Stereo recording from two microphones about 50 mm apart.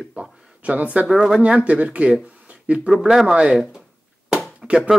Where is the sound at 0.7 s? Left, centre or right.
Right.